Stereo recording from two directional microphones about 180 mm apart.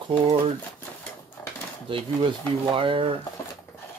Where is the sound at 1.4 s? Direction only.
10° left (ahead or behind).